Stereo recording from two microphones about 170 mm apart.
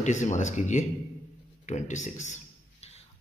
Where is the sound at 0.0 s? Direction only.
45° left (ahead or behind).